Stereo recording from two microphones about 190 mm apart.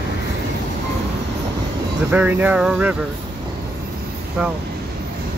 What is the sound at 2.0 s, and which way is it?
Speech, 10° right (ahead or behind).